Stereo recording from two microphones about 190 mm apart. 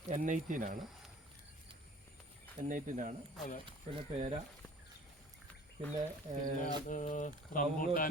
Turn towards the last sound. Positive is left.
turn(degrees=45)  # may be behind; listen again after turning